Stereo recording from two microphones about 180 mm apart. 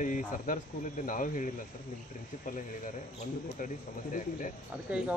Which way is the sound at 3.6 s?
45° left (ahead or behind).